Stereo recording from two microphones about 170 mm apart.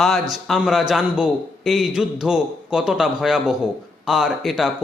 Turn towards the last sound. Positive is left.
turn(degrees=0)  # may be behind; listen again after turning